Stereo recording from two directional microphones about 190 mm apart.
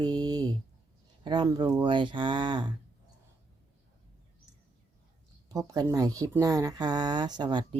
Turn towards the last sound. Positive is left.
turn(degrees=-25)  # may be behind; listen again after turning